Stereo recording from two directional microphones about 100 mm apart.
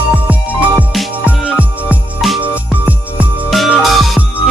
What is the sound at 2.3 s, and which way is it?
Music, 15° right (ahead or behind).